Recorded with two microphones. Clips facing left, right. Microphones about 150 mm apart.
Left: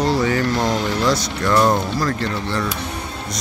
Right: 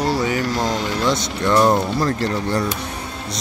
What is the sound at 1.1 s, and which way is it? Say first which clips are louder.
Speech: even; 25° right (ahead or behind).